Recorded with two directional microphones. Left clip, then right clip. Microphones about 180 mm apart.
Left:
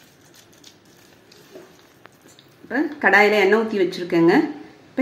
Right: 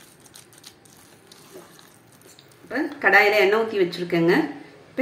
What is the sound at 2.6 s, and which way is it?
A woman's voice, 50° left (ahead or behind).